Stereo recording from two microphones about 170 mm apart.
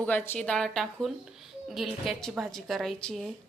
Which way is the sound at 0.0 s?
10° left (ahead or behind).